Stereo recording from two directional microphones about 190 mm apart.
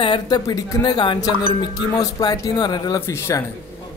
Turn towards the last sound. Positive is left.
turn(degrees=15)  # may be behind; listen again after turning